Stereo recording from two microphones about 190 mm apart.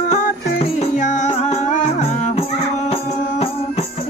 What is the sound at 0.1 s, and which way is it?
Music, 35° left (ahead or behind).